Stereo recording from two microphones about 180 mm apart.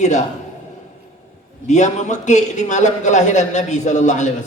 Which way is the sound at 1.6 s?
40° left (ahead or behind).